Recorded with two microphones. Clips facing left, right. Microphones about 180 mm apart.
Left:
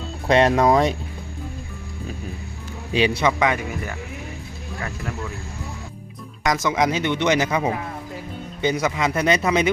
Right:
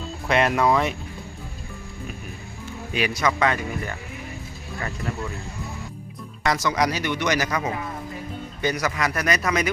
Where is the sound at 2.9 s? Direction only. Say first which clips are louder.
Left 4 dB; 30° left (ahead or behind).